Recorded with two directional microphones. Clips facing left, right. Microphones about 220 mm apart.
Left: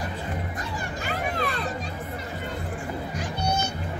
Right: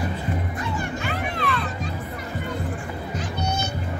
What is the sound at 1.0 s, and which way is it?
Children playing, 40° left (ahead or behind).